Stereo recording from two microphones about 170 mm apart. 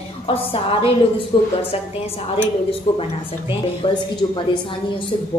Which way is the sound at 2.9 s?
30° left (ahead or behind).